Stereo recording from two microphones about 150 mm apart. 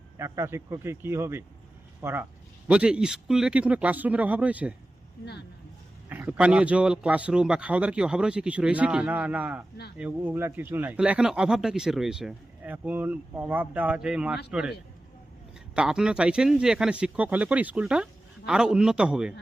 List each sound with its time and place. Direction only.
0.2 s speech: 20° right (ahead or behind)
6.1 s speech: 10° right (ahead or behind)
15.7 s speech: 5° right (ahead or behind)